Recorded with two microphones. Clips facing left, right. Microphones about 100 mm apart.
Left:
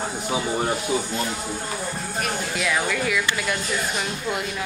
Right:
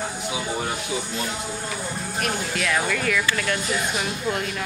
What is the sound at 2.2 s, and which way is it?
Speech, centre (ahead or behind).